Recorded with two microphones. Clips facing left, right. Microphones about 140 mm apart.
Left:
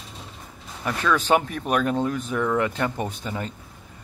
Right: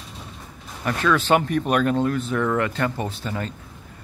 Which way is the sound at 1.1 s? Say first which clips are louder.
Right 1 dB; 10° left (ahead or behind).